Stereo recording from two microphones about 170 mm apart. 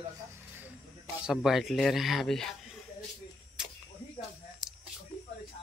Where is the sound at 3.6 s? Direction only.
5° right (ahead or behind).